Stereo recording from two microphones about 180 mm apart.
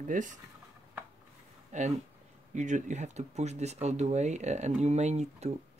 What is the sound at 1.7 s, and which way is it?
Speech, 40° right (ahead or behind).